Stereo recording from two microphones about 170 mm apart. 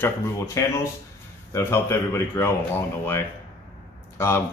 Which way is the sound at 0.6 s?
20° left (ahead or behind).